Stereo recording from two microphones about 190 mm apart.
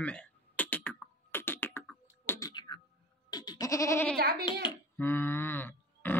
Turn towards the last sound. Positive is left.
turn(degrees=10)  # may be behind; listen again after turning